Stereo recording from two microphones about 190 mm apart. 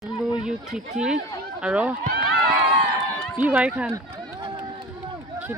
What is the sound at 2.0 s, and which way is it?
Speech, 55° right (ahead or behind).